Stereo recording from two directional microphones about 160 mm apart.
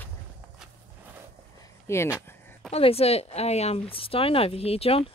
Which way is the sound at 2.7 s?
40° left (ahead or behind).